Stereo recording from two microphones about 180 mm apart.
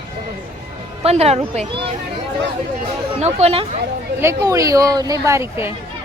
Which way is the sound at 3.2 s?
35° right (ahead or behind).